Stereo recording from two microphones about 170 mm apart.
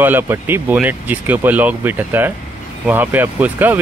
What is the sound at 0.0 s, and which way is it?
Speech, 10° right (ahead or behind).